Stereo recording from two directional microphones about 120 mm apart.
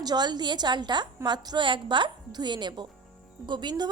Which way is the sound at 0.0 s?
35° right (ahead or behind).